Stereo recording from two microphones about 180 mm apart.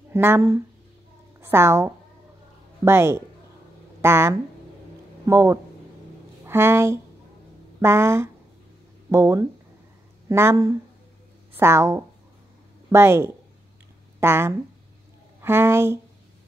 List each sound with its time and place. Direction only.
0.1 s a woman's voice: 10° right (ahead or behind)